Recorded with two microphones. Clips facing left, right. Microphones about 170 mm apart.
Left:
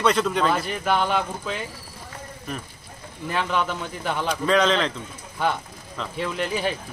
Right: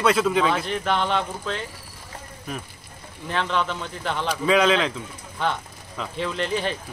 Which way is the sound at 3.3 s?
5° left (ahead or behind).